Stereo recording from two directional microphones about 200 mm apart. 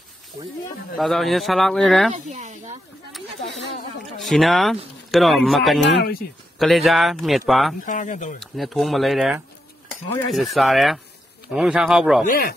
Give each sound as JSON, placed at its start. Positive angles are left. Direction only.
{"t": 0.9, "sound": "speech", "side_deg": 0}
{"t": 2.1, "sound": "speech", "side_deg": -35}
{"t": 4.2, "sound": "speech", "side_deg": 0}
{"t": 5.9, "sound": "speech", "side_deg": 60}
{"t": 6.6, "sound": "speech", "side_deg": 0}
{"t": 7.8, "sound": "speech", "side_deg": 40}
{"t": 8.4, "sound": "speech", "side_deg": 0}
{"t": 12.3, "sound": "speech", "side_deg": 45}